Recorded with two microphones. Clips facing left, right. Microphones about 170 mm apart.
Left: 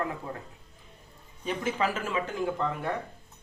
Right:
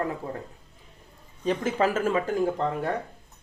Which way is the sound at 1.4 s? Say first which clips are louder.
Right 5 dB; 40° right (ahead or behind).